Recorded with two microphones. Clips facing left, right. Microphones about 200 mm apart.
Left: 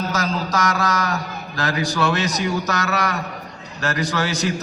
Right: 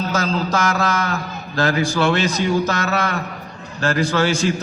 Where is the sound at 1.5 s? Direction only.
30° right (ahead or behind).